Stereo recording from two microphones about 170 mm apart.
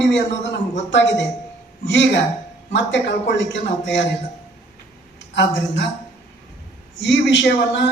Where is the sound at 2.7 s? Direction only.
90° left.